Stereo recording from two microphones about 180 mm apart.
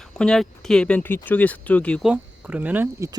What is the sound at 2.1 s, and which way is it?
Speech, 10° right (ahead or behind).